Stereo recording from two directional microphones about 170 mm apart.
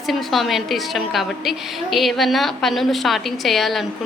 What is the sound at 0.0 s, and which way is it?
A woman's voice, centre (ahead or behind).